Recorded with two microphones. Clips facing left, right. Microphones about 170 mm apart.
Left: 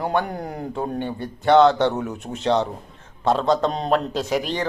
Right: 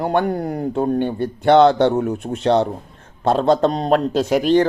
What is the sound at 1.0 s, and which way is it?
Speech, 60° right (ahead or behind).